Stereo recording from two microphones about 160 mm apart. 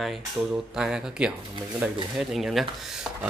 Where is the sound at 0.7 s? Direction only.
5° right (ahead or behind).